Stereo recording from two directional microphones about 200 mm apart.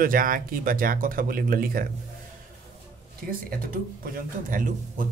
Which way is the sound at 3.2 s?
50° right (ahead or behind).